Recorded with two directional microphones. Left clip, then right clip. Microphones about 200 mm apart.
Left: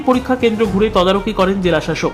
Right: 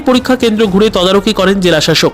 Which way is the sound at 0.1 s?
30° right (ahead or behind).